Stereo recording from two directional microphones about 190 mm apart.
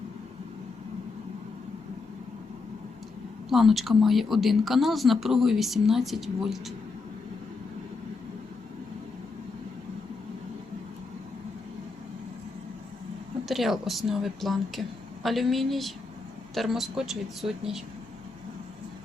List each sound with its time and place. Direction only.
3.5 s speech: centre (ahead or behind)
13.5 s speech: centre (ahead or behind)